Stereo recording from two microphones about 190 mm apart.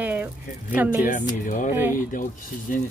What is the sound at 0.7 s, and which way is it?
Speech, 10° right (ahead or behind).